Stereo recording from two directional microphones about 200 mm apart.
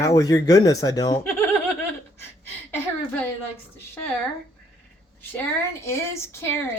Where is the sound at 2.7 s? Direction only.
10° left (ahead or behind).